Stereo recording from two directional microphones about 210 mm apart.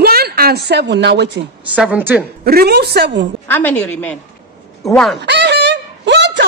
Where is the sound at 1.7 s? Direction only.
5° right (ahead or behind).